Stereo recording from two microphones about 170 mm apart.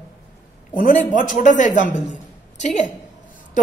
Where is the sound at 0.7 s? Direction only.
50° left (ahead or behind).